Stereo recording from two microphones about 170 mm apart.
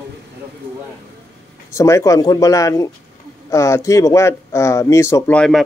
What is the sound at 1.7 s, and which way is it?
Speech, 15° left (ahead or behind).